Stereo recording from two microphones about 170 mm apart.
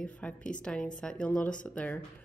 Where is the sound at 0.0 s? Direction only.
5° left (ahead or behind).